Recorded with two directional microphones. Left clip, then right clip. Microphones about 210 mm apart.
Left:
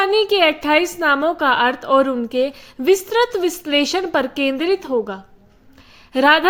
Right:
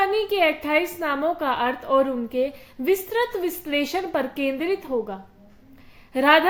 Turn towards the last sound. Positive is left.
turn(degrees=50)  # may be behind; listen again after turning